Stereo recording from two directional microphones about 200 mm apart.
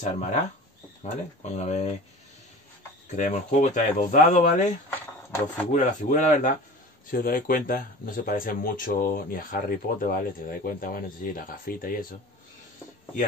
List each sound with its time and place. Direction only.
0.0 s speech: 35° left (ahead or behind)
3.1 s speech: 35° left (ahead or behind)
4.9 s a sound: 10° left (ahead or behind)
5.7 s speech: 35° left (ahead or behind)